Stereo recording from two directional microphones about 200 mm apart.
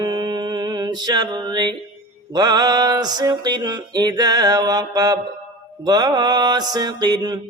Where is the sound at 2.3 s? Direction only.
20° right (ahead or behind).